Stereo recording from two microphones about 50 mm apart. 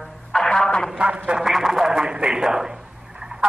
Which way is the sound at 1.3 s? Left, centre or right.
Centre.